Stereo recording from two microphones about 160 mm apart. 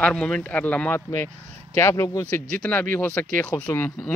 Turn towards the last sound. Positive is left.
turn(degrees=15)  # may be behind; listen again after turning